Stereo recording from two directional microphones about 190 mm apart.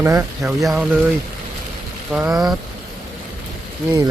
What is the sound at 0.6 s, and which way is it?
Speech, centre (ahead or behind).